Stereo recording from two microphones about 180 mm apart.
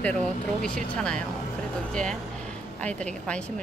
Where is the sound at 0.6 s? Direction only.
5° left (ahead or behind).